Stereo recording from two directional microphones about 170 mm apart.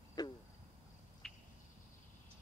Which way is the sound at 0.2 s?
25° left (ahead or behind).